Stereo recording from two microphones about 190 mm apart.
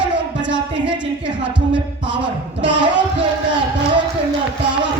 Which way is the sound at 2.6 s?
70° right (ahead or behind).